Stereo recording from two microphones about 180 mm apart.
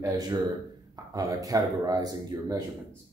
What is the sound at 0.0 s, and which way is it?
Speech, 20° right (ahead or behind).